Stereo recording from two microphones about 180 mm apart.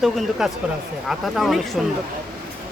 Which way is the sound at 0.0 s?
Centre (ahead or behind).